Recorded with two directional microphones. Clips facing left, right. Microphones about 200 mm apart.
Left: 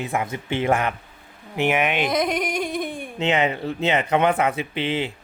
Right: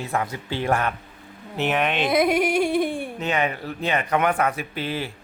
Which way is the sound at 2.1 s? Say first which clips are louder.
Right 3 dB; 5° right (ahead or behind).